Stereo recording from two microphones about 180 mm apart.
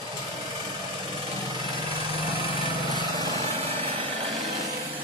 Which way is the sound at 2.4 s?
25° right (ahead or behind).